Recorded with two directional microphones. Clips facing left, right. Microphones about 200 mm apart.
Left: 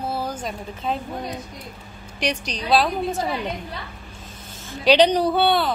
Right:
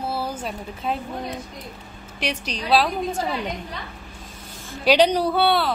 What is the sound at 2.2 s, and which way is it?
Speech, 5° right (ahead or behind).